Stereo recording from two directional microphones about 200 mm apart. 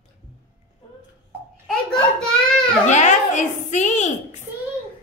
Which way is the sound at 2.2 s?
5° left (ahead or behind).